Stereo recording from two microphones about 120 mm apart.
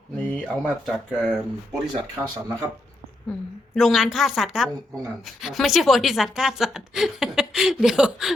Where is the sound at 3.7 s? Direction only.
5° right (ahead or behind).